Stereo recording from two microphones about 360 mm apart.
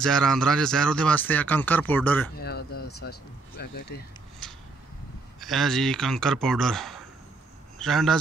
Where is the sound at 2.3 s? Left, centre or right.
Left.